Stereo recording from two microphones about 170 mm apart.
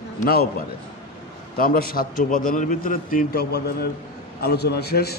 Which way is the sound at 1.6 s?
60° left (ahead or behind).